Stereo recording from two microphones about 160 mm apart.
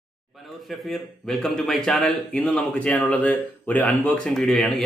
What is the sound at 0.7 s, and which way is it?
A man's voice, centre (ahead or behind).